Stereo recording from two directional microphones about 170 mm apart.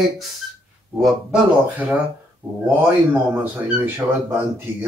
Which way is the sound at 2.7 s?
10° right (ahead or behind).